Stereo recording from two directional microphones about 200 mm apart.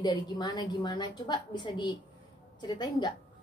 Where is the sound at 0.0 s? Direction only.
20° left (ahead or behind).